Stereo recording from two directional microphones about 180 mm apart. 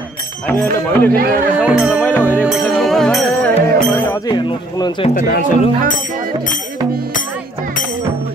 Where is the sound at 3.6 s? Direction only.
15° left (ahead or behind).